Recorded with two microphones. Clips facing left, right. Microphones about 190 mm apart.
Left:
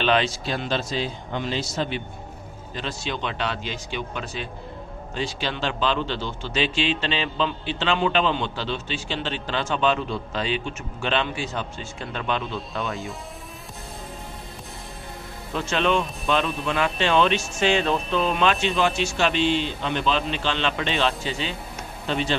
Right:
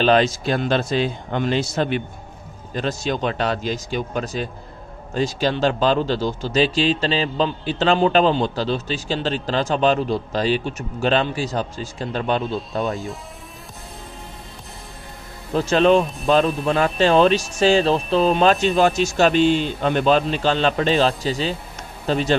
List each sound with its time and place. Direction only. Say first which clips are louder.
0.0 s speech: right 6 dB; 45° right (ahead or behind)
2.7 s speech: right 7 dB; 45° right (ahead or behind)
12.8 s speech: right 5 dB; centre (ahead or behind)
15.5 s speech: right 7 dB; 35° right (ahead or behind)